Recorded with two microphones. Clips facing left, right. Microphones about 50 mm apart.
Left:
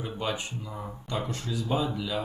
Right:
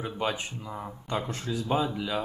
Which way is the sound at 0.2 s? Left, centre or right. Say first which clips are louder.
Right 2 dB; right.